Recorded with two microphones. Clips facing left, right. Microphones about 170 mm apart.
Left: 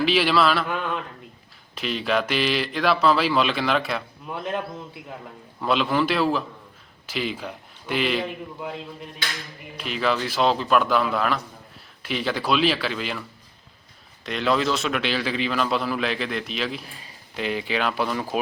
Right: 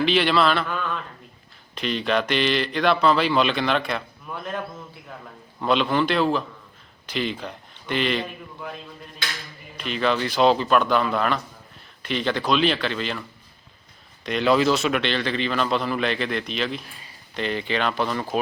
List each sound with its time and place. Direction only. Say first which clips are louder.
0.0 s a man's voice: even; 5° left (ahead or behind)
0.7 s a sound: left 1 dB; 15° left (ahead or behind)
1.7 s a man's voice: right 1 dB; 5° left (ahead or behind)
4.3 s a man's voice: left 2 dB; 20° left (ahead or behind)
5.5 s a man's voice: right 1 dB; 5° left (ahead or behind)
9.7 s a man's voice: right 1 dB; 5° left (ahead or behind)
14.3 s a man's voice: right 3 dB; centre (ahead or behind)